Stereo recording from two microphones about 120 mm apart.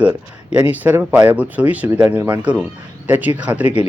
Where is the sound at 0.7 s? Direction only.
15° right (ahead or behind).